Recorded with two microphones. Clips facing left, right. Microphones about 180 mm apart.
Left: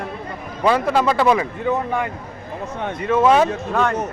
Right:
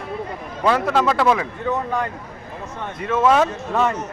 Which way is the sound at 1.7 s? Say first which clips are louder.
Left 1 dB; 10° left (ahead or behind).